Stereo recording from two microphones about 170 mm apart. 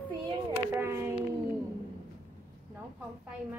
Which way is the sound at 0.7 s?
15° right (ahead or behind).